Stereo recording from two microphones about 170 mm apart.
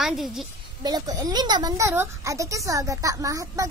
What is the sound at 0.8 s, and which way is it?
A child's voice, 20° right (ahead or behind).